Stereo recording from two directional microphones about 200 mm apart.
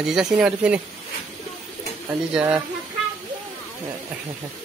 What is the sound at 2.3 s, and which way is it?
Speech, 5° right (ahead or behind).